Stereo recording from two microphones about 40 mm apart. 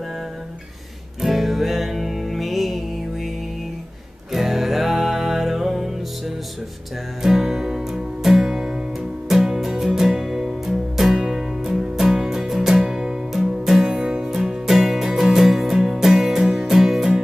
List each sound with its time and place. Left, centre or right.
1.2 s music: centre
4.3 s music: centre
12.8 s music: centre